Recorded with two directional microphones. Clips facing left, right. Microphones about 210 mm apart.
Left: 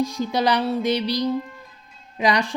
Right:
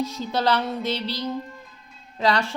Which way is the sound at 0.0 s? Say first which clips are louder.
Left 3 dB; 15° left (ahead or behind).